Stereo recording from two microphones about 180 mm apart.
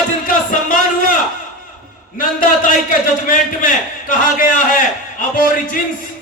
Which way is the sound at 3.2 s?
50° left (ahead or behind).